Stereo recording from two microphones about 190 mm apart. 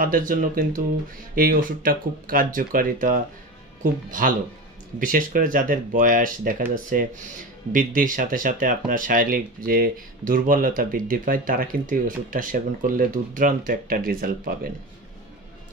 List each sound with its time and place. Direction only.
0.0 s speech: 45° right (ahead or behind)